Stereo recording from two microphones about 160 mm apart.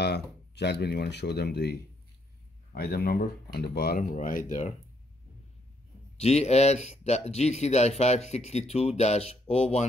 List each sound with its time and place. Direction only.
0.0 s speech: 90° left
2.7 s speech: 75° left (ahead or behind); by 4.7 s 50° left (ahead or behind)
6.1 s speech: 40° left (ahead or behind)